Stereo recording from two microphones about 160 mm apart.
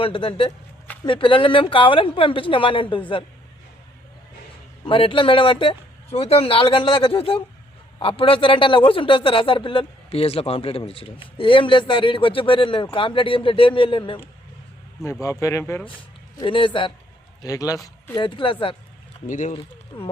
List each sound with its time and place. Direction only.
0.0 s a man's voice: 35° left (ahead or behind)
4.9 s a man's voice: 35° left (ahead or behind)
15.2 s speech: 20° left (ahead or behind)
15.9 s a man's voice: 30° left (ahead or behind)
19.3 s speech: 50° left (ahead or behind)
19.9 s a man's voice: 30° left (ahead or behind)